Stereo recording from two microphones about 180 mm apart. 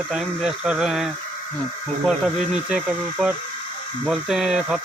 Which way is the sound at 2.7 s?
5° right (ahead or behind).